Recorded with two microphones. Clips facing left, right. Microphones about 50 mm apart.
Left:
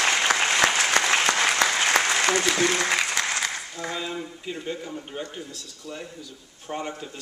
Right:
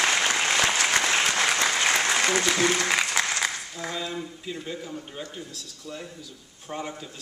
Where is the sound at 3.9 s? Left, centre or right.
Centre.